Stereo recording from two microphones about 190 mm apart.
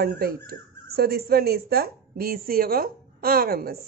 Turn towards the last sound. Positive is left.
turn(degrees=-50)  # may be behind; listen again after turning